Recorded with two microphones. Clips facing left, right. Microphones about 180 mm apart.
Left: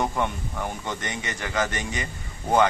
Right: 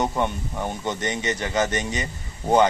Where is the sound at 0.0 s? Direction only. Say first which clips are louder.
Right 2 dB; 20° right (ahead or behind).